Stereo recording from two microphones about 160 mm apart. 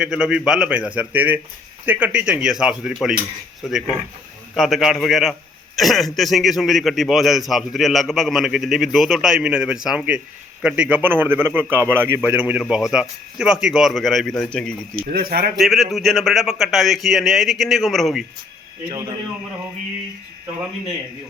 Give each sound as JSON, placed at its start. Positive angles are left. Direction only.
{"t": 0.0, "sound": "a man's voice", "side_deg": -5}
{"t": 15.1, "sound": "speech", "side_deg": -70}
{"t": 15.5, "sound": "a man's voice", "side_deg": 0}
{"t": 18.9, "sound": "a man's voice", "side_deg": -25}